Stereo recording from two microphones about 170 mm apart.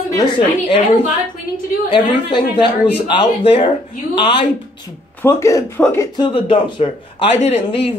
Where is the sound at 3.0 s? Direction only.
30° left (ahead or behind).